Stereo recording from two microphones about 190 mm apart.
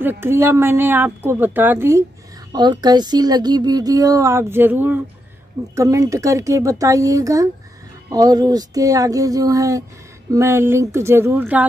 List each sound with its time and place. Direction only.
0.0 s a woman's voice: 10° right (ahead or behind)